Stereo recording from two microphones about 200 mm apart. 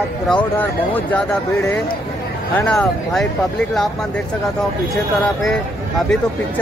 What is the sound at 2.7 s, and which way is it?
Speech, 5° left (ahead or behind).